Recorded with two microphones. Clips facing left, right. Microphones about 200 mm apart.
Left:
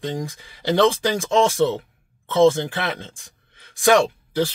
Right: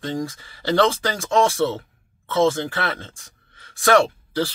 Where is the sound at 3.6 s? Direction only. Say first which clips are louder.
Left 1 dB; 15° left (ahead or behind).